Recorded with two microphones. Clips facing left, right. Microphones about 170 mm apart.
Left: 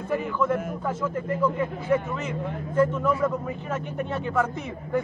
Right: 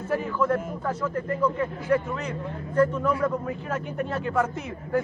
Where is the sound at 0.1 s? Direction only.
Centre (ahead or behind).